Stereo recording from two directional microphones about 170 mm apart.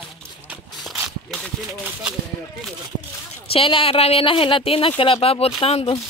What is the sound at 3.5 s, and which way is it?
Speech, 30° left (ahead or behind).